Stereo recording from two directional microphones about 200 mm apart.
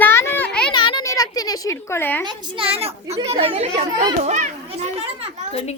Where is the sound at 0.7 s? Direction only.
25° left (ahead or behind).